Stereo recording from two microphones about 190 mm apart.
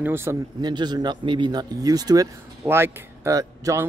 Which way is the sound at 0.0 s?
10° right (ahead or behind).